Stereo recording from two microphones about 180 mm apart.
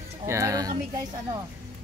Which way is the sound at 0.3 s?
15° right (ahead or behind).